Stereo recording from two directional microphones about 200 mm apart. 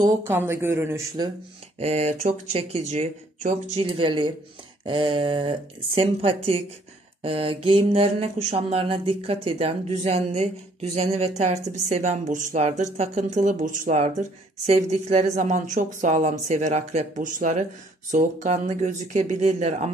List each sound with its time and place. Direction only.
0.0 s speech: 10° right (ahead or behind)
1.8 s mantra: 35° right (ahead or behind)
4.8 s speech: 25° right (ahead or behind)
7.2 s mantra: 25° right (ahead or behind)